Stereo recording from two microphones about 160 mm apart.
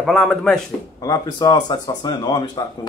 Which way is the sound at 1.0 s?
25° left (ahead or behind).